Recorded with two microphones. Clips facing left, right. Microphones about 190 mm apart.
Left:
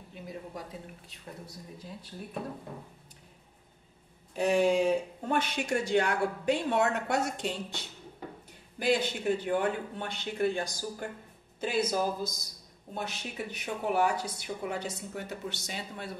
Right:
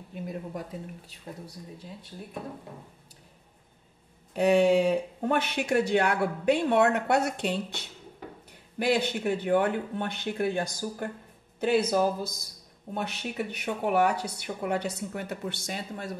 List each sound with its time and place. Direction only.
0.1 s speech: 55° right (ahead or behind)
4.4 s speech: 60° right (ahead or behind)